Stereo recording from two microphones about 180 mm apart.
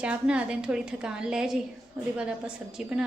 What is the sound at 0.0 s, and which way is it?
A woman's voice, 5° right (ahead or behind).